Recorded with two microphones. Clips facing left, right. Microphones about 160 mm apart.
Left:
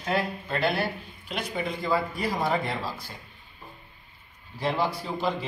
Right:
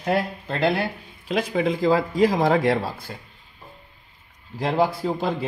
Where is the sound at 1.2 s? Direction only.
90° right.